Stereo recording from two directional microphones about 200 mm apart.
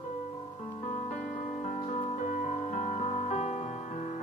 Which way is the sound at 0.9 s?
35° left (ahead or behind).